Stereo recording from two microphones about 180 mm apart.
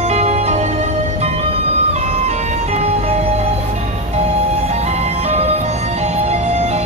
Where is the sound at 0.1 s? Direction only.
40° right (ahead or behind).